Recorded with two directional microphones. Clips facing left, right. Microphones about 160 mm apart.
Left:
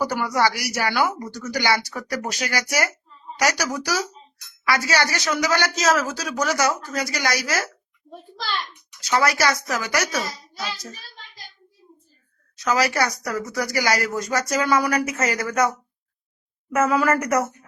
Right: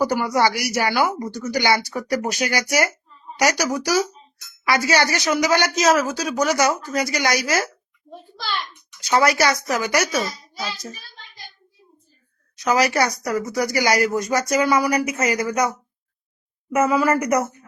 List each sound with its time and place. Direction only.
0.0 s speech: 15° right (ahead or behind)
9.0 s speech: 20° right (ahead or behind)
12.5 s speech: 15° right (ahead or behind)
16.9 s speech: centre (ahead or behind)
17.2 s speech: 15° right (ahead or behind)